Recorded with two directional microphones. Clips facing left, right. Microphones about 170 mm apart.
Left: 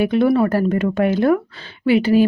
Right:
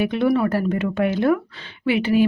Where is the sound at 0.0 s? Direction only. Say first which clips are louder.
Left 4 dB; 40° left (ahead or behind).